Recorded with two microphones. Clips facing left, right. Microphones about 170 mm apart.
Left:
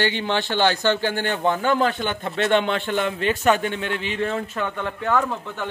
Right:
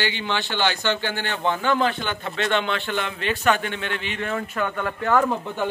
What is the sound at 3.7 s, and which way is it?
A man's voice, 35° left (ahead or behind).